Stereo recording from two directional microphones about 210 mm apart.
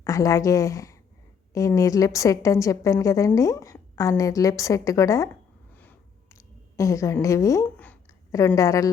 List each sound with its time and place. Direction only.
0.0 s a woman's voice: 15° left (ahead or behind)